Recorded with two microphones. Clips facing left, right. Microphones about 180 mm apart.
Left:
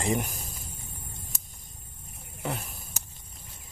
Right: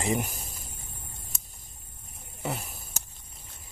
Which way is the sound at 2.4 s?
5° right (ahead or behind).